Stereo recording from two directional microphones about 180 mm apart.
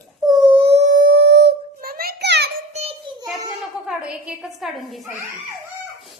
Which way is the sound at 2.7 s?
35° right (ahead or behind).